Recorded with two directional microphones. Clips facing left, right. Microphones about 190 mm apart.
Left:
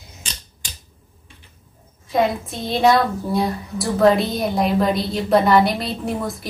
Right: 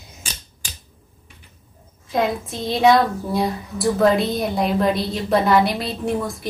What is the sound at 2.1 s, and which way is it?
A woman's voice, centre (ahead or behind).